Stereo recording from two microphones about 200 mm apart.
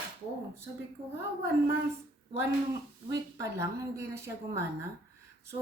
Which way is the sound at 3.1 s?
15° right (ahead or behind).